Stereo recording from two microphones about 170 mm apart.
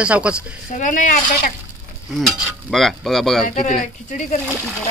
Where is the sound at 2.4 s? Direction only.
Centre (ahead or behind).